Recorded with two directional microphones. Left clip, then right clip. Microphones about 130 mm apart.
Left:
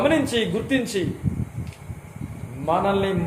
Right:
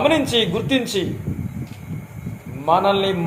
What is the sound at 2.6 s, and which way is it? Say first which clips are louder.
Speech: right 5 dB; 35° right (ahead or behind).